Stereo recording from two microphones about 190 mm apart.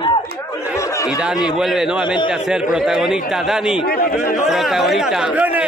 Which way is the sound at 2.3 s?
5° right (ahead or behind).